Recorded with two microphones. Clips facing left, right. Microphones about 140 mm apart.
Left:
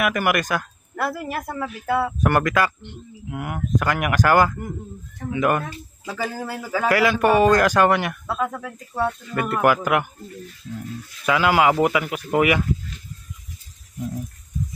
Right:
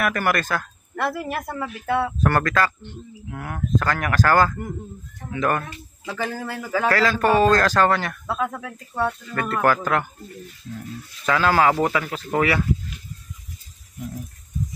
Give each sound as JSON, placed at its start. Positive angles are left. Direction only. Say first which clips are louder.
{"t": 0.0, "sound": "a man's voice", "louder": "left 1 dB", "side_deg": 10}
{"t": 0.9, "sound": "speech", "louder": "even", "side_deg": 0}
{"t": 2.2, "sound": "a man's voice", "louder": "left 2 dB", "side_deg": 15}
{"t": 8.3, "sound": "speech", "louder": "right 2 dB", "side_deg": 0}
{"t": 8.9, "sound": "a man's voice", "louder": "left 1 dB", "side_deg": 10}
{"t": 11.2, "sound": "a man's voice", "louder": "left 1 dB", "side_deg": 15}